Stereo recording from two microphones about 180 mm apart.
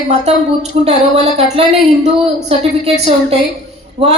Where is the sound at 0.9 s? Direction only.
35° right (ahead or behind).